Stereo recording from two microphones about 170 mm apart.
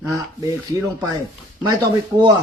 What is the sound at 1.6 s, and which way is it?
Speech, 25° right (ahead or behind).